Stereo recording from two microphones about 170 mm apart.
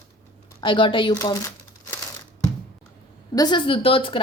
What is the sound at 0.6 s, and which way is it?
Speech, 30° left (ahead or behind).